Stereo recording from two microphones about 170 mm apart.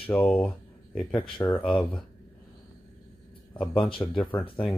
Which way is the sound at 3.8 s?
30° left (ahead or behind).